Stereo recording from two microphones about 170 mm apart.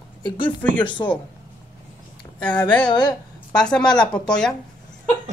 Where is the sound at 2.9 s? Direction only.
25° left (ahead or behind).